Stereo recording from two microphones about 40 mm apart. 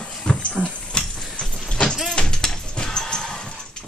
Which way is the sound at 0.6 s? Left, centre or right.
Right.